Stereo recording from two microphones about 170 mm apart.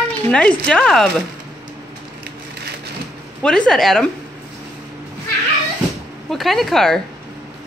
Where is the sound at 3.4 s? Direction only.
5° left (ahead or behind).